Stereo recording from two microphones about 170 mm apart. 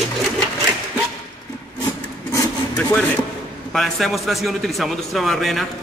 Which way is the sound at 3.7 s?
Centre (ahead or behind).